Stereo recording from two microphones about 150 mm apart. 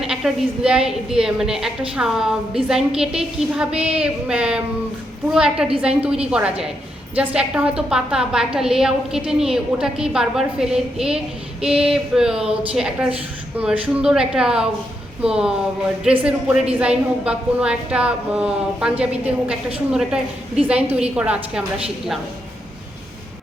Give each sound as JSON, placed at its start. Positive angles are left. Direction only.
{"t": 0.0, "sound": "a woman's voice", "side_deg": -5}